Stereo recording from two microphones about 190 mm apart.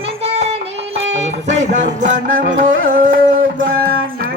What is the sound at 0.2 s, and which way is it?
Music, 35° right (ahead or behind).